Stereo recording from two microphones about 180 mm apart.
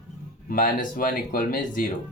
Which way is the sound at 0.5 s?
50° left (ahead or behind).